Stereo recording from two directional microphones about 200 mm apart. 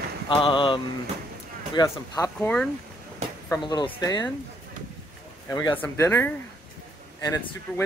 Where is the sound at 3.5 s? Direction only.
20° left (ahead or behind).